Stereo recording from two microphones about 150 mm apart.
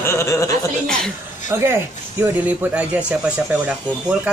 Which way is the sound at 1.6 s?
15° right (ahead or behind).